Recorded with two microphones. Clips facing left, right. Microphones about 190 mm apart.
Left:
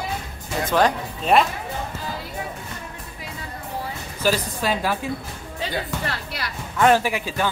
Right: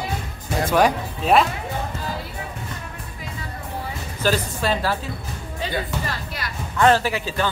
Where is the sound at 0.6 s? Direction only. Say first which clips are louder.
Right 1 dB; 10° right (ahead or behind).